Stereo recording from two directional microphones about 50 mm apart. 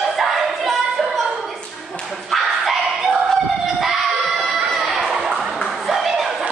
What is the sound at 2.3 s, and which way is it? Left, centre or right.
Dog, centre.